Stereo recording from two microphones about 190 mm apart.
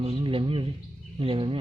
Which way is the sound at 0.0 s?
30° right (ahead or behind).